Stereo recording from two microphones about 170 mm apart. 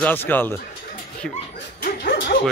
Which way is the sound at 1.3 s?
60° left (ahead or behind).